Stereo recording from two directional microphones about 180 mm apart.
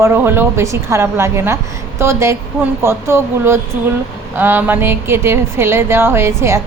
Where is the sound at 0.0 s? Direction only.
15° right (ahead or behind).